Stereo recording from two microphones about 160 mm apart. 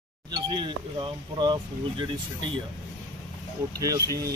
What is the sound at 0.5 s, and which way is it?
Speech, 30° right (ahead or behind).